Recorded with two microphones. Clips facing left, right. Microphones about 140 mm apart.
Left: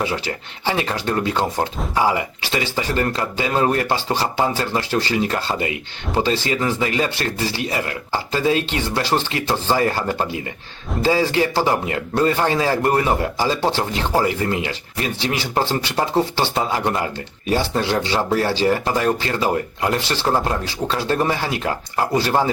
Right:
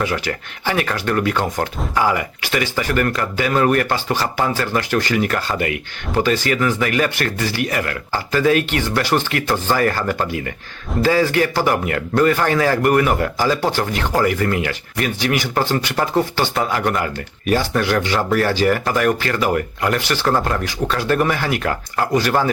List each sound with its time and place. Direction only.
0.0 s speech: 25° left (ahead or behind)